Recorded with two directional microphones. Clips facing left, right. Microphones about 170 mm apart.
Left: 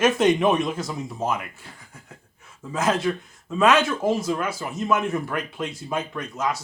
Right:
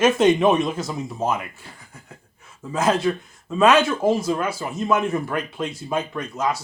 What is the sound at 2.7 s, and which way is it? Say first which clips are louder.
Speech: right 3 dB; 30° right (ahead or behind).